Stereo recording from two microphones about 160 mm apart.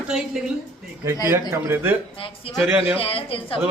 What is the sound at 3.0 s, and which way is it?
Speech, 35° left (ahead or behind).